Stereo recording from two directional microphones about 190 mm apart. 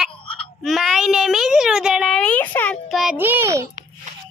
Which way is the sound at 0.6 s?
Centre (ahead or behind).